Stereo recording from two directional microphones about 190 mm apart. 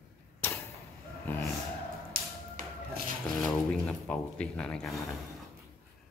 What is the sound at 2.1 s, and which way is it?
Music, 45° right (ahead or behind).